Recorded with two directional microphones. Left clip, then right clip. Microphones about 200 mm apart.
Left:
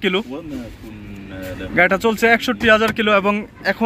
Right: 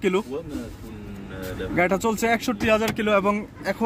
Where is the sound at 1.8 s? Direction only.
5° right (ahead or behind).